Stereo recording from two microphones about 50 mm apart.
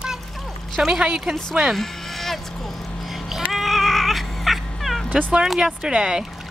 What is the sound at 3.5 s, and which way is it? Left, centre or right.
Dog, centre.